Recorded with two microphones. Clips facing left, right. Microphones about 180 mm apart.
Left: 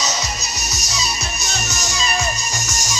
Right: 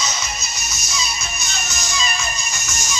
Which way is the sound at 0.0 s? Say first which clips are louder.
Left 3 dB; 40° left (ahead or behind).